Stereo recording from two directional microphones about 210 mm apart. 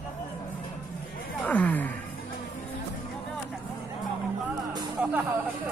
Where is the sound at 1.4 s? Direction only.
5° left (ahead or behind).